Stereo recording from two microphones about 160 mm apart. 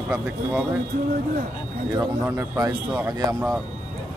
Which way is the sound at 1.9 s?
15° right (ahead or behind).